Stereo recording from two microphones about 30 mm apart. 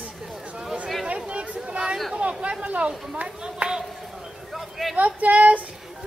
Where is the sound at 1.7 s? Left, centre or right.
Right.